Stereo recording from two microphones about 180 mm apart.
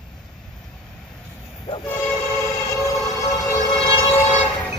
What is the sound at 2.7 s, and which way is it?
Siren, 15° left (ahead or behind).